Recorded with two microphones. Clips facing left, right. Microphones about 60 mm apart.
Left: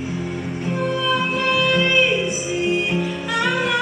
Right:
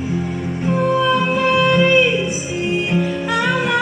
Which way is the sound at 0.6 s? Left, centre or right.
Centre.